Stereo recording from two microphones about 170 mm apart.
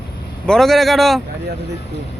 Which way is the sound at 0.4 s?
Centre (ahead or behind).